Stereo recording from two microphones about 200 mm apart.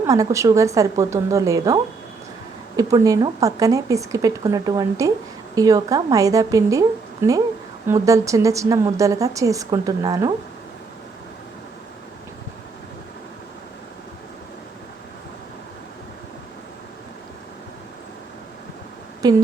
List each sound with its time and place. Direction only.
0.0 s a woman's voice: 15° right (ahead or behind)
19.2 s speech: 20° right (ahead or behind)